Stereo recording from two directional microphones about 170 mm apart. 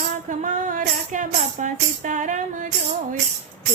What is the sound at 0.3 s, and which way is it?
Music, 50° right (ahead or behind).